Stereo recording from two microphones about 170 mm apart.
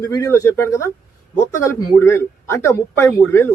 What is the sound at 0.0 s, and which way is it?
Speech, 15° left (ahead or behind).